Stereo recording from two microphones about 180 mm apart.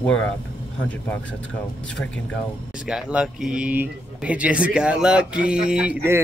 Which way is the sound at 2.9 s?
5° right (ahead or behind).